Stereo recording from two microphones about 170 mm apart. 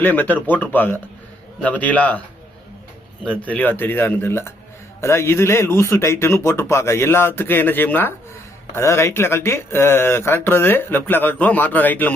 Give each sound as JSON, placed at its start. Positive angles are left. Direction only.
{"t": 0.0, "sound": "speech", "side_deg": 10}
{"t": 3.2, "sound": "speech", "side_deg": 10}